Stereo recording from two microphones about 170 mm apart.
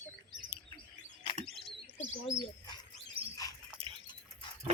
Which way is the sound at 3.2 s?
35° right (ahead or behind).